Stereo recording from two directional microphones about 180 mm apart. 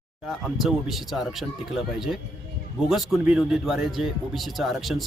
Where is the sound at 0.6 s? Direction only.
Centre (ahead or behind).